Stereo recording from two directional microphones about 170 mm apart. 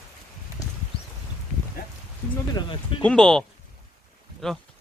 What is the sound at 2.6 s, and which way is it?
Speech, 30° left (ahead or behind).